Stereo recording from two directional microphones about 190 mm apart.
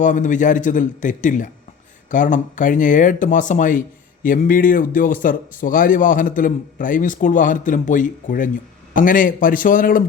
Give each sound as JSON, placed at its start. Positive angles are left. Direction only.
{"t": 0.0, "sound": "a man's voice", "side_deg": 40}